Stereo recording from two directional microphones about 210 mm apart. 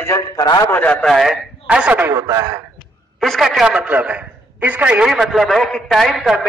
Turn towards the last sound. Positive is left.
turn(degrees=0)  # may be behind; listen again after turning